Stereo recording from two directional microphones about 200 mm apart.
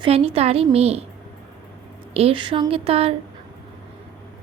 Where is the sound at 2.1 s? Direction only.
25° right (ahead or behind).